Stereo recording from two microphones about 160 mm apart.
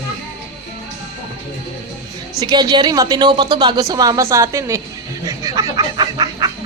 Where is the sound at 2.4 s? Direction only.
25° right (ahead or behind).